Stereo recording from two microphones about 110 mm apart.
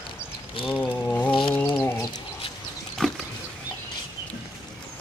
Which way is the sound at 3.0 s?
5° left (ahead or behind).